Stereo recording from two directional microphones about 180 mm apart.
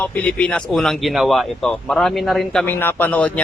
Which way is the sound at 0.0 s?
10° left (ahead or behind).